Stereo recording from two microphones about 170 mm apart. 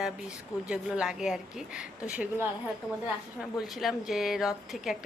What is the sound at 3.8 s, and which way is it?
A woman's voice, centre (ahead or behind).